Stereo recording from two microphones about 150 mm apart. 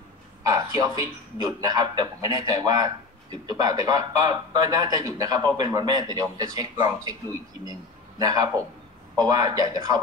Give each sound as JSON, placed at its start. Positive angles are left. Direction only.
{"t": 0.4, "sound": "a man's voice", "side_deg": -25}